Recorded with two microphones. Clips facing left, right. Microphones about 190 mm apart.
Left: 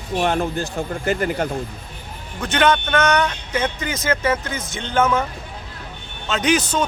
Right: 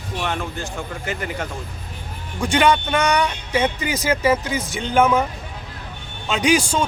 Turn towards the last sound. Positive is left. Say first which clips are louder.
# right 1 dB
turn(degrees=-10)  # may be behind; listen again after turning